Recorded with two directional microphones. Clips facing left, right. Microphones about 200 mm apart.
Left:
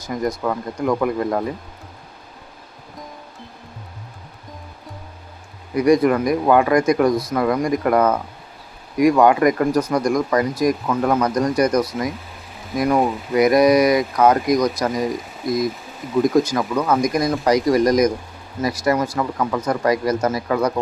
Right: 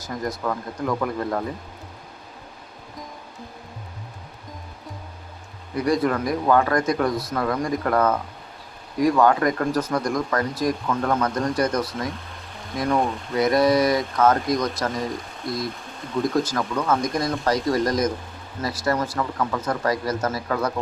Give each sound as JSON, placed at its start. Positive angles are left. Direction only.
{"t": 0.1, "sound": "speech", "side_deg": 15}
{"t": 5.7, "sound": "speech", "side_deg": 15}
{"t": 19.1, "sound": "speech", "side_deg": 15}